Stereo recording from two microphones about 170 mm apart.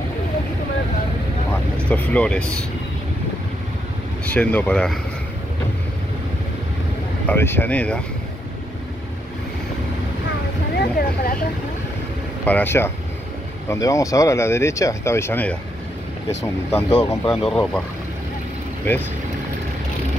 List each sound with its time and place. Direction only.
1.9 s speech: 5° left (ahead or behind)
4.3 s speech: 10° left (ahead or behind)
7.2 s speech: 10° left (ahead or behind)
10.8 s speech: 60° left (ahead or behind)
12.4 s speech: 10° left (ahead or behind)
16.7 s speech: 15° left (ahead or behind)
17.3 s speech: centre (ahead or behind)